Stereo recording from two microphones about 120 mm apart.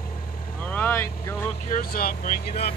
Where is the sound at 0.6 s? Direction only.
15° left (ahead or behind).